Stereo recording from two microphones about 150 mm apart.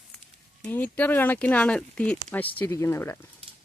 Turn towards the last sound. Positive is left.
turn(degrees=15)  # may be behind; listen again after turning